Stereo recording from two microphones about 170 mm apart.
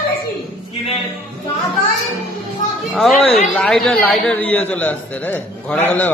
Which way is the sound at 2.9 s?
Centre (ahead or behind).